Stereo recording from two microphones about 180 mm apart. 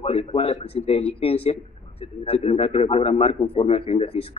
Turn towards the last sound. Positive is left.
turn(degrees=35)  # may be behind; listen again after turning